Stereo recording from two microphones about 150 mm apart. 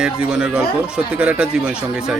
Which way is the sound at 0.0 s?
5° right (ahead or behind).